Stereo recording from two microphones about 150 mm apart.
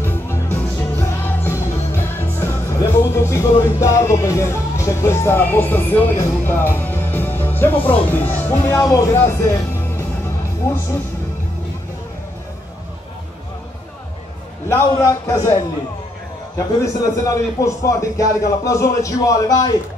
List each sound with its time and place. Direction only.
0.0 s music: 15° left (ahead or behind)
3.0 s speech: 15° left (ahead or behind)
10.6 s speech: 15° left (ahead or behind)
14.7 s a man's voice: 20° left (ahead or behind)
16.5 s a man's voice: 20° left (ahead or behind)